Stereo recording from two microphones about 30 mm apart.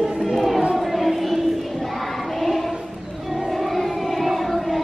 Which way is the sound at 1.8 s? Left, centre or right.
Centre.